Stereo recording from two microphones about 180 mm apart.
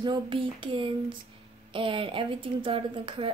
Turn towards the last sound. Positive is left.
turn(degrees=-30)  # may be behind; listen again after turning